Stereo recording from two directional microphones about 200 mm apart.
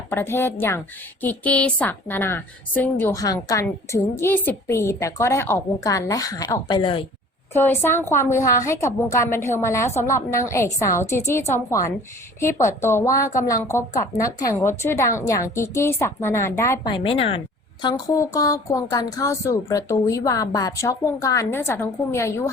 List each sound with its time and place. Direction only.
0.1 s a woman's voice: 10° left (ahead or behind)
7.5 s a woman's voice: 10° left (ahead or behind)